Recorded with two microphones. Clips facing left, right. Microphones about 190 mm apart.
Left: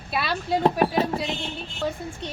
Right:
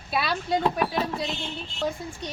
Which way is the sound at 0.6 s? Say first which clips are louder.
Left 4 dB; 40° left (ahead or behind).